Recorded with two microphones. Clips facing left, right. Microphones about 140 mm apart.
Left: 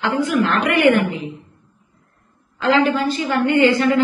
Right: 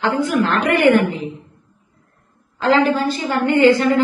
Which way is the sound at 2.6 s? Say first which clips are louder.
Right 1 dB; 40° right (ahead or behind).